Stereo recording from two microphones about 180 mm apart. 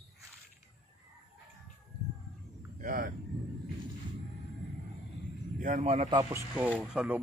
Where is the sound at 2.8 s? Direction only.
50° right (ahead or behind).